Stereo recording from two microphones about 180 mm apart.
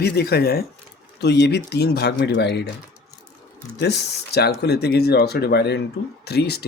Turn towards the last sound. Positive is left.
turn(degrees=65)  # may be behind; listen again after turning